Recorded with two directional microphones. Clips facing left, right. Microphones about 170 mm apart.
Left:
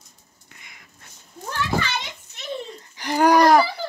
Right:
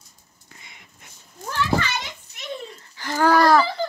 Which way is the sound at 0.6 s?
25° right (ahead or behind).